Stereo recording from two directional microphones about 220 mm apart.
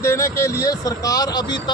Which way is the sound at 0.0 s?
10° left (ahead or behind).